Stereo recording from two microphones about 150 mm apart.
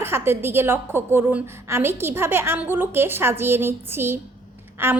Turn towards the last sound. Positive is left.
turn(degrees=-15)  # may be behind; listen again after turning